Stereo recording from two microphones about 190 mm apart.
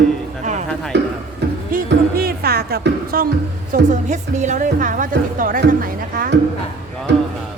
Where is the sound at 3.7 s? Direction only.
40° right (ahead or behind).